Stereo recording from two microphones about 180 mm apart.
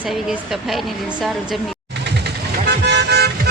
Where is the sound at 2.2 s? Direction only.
65° right (ahead or behind).